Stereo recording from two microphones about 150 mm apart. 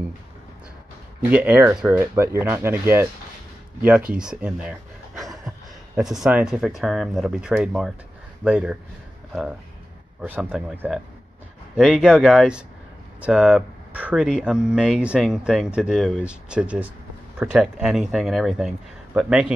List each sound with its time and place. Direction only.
1.3 s speech: 10° right (ahead or behind)
4.1 s speech: 5° right (ahead or behind)
10.2 s speech: 10° right (ahead or behind)